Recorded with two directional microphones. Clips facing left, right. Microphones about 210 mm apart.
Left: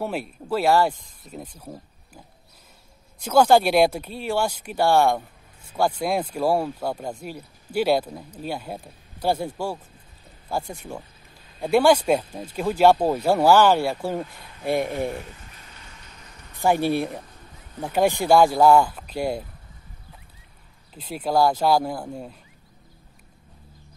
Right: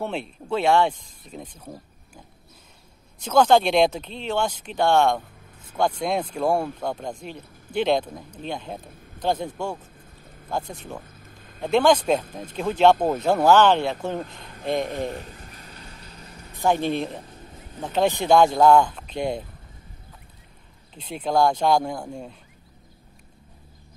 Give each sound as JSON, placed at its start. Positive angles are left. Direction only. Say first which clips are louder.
{"t": 0.0, "sound": "speech", "louder": "left 1 dB", "side_deg": 5}
{"t": 3.2, "sound": "speech", "louder": "left 1 dB", "side_deg": 10}
{"t": 15.2, "sound": "a sound", "louder": "right 2 dB", "side_deg": -45}
{"t": 16.5, "sound": "speech", "louder": "left 1 dB", "side_deg": 10}
{"t": 20.9, "sound": "speech", "louder": "even", "side_deg": 5}